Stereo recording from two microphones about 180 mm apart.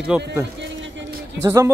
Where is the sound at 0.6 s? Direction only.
90° right.